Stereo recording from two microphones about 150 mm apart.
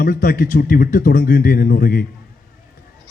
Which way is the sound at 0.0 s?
70° left (ahead or behind).